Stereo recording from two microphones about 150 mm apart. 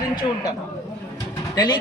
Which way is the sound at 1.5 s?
30° left (ahead or behind).